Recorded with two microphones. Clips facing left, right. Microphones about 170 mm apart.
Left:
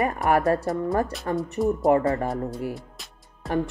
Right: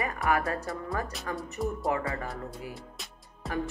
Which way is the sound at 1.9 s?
45° left (ahead or behind).